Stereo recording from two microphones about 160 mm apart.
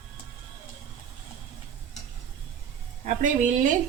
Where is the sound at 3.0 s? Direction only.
50° right (ahead or behind).